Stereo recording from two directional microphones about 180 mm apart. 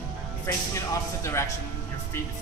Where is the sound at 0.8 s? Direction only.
15° left (ahead or behind).